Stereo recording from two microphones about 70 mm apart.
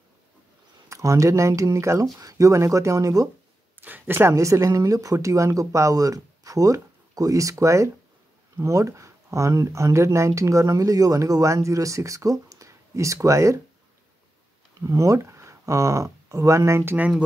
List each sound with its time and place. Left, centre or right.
0.8 s speech: right
3.8 s speech: right
4.4 s speech: right
14.8 s speech: right